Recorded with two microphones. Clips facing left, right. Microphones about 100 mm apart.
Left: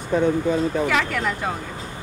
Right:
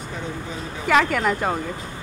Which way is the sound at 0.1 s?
55° left (ahead or behind).